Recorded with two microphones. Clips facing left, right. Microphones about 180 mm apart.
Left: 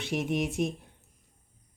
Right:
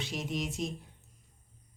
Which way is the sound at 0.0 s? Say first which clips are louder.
Left 6 dB; 60° left (ahead or behind).